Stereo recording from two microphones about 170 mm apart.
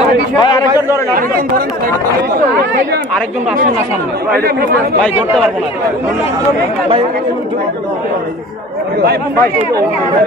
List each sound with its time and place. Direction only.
0.4 s a man's voice: 25° left (ahead or behind)
4.3 s speech: 65° right (ahead or behind)